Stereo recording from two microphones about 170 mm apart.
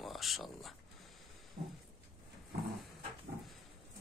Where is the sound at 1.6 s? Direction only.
75° right (ahead or behind).